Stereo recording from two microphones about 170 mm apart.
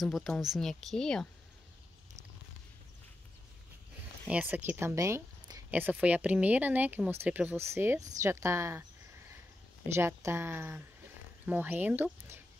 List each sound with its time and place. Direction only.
0.0 s speech: centre (ahead or behind)
4.3 s speech: 10° right (ahead or behind)
9.9 s speech: 15° right (ahead or behind)